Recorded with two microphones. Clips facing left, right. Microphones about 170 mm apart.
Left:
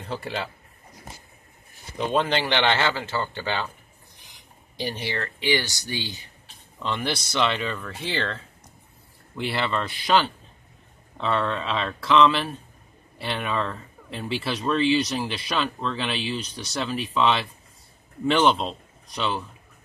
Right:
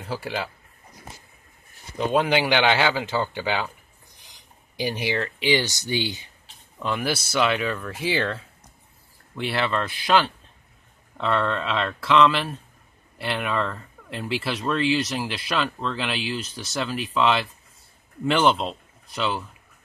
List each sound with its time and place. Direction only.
0.0 s speech: 5° right (ahead or behind)
2.0 s speech: 10° right (ahead or behind)
4.7 s a man's voice: 10° right (ahead or behind)